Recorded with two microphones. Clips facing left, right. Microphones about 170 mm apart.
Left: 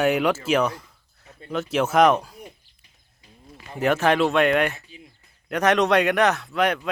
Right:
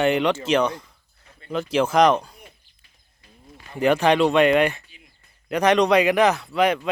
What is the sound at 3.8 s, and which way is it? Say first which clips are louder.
Speech: right 2 dB; 5° left (ahead or behind).